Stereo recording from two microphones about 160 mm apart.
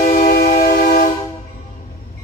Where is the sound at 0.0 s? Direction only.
65° left (ahead or behind).